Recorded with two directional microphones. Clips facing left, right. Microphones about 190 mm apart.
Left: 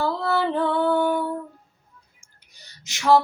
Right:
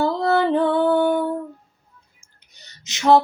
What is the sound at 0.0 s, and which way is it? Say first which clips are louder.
Music: right 4 dB; 20° right (ahead or behind).